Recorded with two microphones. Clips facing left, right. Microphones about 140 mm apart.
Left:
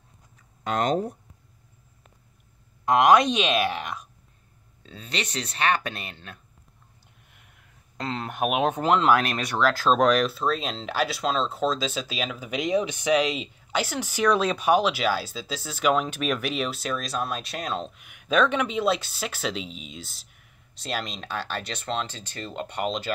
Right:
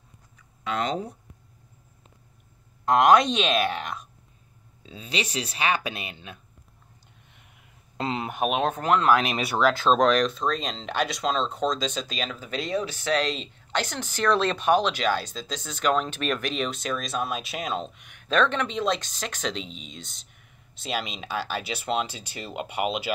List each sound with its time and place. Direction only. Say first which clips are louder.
0.4 s a sound: left 2 dB; 45° left (ahead or behind)
2.8 s speech: even; centre (ahead or behind)
8.0 s speech: right 2 dB; 15° right (ahead or behind)
8.3 s speech: left 2 dB; 5° left (ahead or behind)